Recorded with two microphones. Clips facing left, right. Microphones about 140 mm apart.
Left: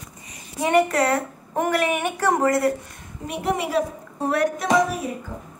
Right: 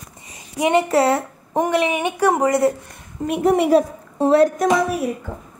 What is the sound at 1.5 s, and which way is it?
A woman's voice, 15° right (ahead or behind).